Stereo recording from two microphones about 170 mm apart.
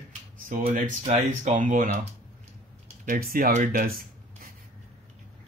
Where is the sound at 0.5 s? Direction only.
50° right (ahead or behind).